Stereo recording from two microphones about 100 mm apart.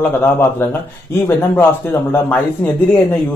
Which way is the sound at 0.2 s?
20° left (ahead or behind).